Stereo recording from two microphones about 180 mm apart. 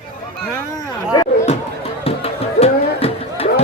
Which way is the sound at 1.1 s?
20° left (ahead or behind).